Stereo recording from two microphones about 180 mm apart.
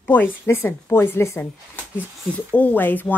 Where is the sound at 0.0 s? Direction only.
10° left (ahead or behind).